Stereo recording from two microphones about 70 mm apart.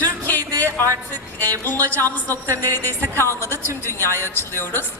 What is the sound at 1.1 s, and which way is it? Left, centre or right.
A woman's voice, left.